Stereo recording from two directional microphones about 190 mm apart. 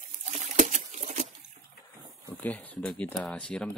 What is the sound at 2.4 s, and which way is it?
Speech, 5° left (ahead or behind).